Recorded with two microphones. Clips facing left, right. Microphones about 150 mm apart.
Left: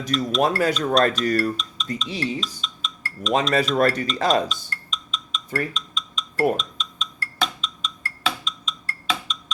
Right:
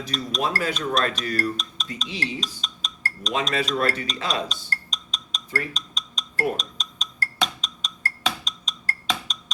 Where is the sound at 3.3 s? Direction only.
40° left (ahead or behind).